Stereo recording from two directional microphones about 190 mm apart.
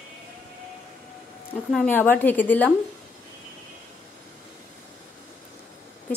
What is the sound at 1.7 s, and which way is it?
A woman's voice, 10° left (ahead or behind).